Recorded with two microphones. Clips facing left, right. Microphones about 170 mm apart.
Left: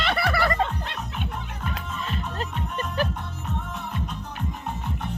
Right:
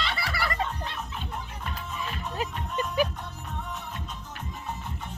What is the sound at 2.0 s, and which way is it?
Music, 10° right (ahead or behind).